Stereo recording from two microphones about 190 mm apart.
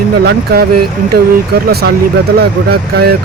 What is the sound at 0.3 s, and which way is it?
Speech, 55° right (ahead or behind).